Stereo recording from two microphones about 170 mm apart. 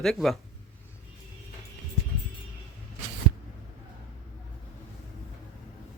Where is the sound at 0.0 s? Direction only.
5° left (ahead or behind).